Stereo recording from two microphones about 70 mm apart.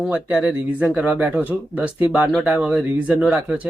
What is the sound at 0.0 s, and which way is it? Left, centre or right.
Speech, centre.